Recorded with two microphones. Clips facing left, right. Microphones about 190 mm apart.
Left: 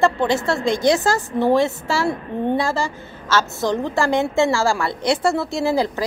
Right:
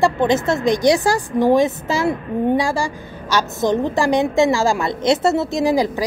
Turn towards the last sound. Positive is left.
turn(degrees=-15)  # may be behind; listen again after turning